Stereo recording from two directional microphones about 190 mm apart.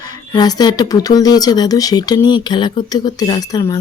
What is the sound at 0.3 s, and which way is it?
Speech, 20° left (ahead or behind).